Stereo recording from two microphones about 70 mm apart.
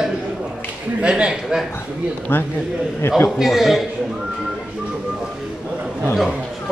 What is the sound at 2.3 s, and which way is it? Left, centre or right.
Speech, left.